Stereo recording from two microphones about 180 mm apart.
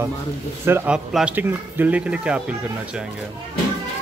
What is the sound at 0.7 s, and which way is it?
Speech, 10° right (ahead or behind).